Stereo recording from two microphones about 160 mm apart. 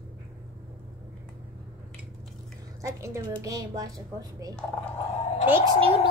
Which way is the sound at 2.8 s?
20° right (ahead or behind).